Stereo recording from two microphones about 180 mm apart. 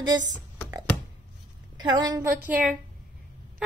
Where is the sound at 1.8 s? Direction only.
25° right (ahead or behind).